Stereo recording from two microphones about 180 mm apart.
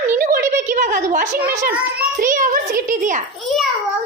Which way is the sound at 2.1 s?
45° right (ahead or behind).